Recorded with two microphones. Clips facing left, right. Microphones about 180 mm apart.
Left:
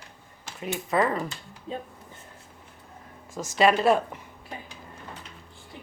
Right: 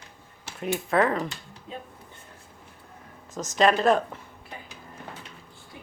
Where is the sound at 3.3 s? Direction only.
45° right (ahead or behind).